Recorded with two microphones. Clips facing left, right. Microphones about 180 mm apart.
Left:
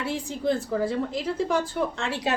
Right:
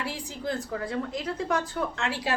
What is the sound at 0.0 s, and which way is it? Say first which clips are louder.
Speech: left 5 dB; 25° left (ahead or behind).